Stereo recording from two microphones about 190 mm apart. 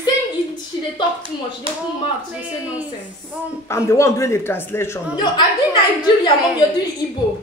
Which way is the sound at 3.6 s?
15° left (ahead or behind).